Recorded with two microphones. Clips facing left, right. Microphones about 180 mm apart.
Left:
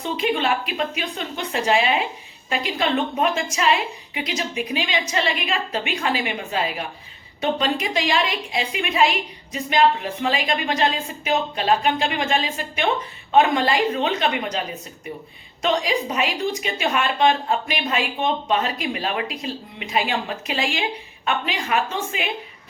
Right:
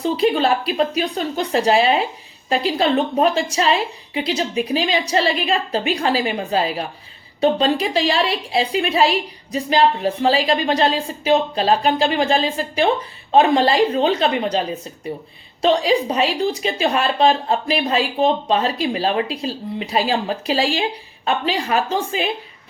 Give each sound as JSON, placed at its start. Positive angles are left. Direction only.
{"t": 0.0, "sound": "a woman's voice", "side_deg": -35}
{"t": 15.6, "sound": "a woman's voice", "side_deg": -30}